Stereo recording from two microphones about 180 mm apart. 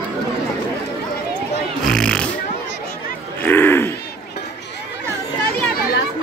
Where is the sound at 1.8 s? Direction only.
5° left (ahead or behind).